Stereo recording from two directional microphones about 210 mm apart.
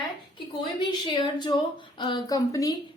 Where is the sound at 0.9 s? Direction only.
20° left (ahead or behind).